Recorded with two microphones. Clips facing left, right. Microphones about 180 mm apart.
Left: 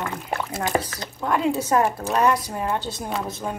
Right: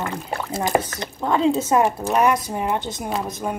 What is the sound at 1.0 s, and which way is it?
Speech, 25° right (ahead or behind).